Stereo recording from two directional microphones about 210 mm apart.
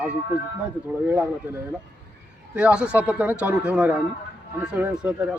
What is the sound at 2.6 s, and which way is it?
A man's voice, 5° right (ahead or behind).